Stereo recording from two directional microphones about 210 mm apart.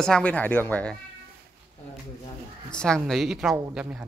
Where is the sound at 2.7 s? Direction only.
5° left (ahead or behind).